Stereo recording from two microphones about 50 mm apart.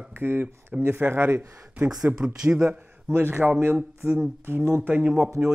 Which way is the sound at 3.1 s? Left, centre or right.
Right.